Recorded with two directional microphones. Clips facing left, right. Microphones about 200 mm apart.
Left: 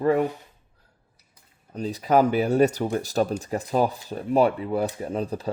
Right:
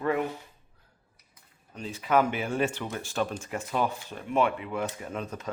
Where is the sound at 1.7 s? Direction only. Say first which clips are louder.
Left 5 dB; 40° left (ahead or behind).